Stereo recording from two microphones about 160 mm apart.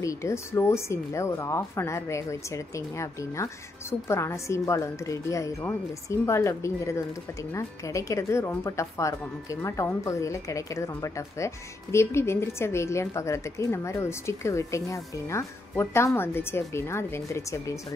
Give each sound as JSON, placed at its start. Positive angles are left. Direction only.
{"t": 0.0, "sound": "a woman's voice", "side_deg": 20}